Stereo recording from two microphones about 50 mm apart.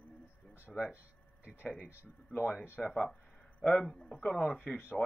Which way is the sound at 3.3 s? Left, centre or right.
Left.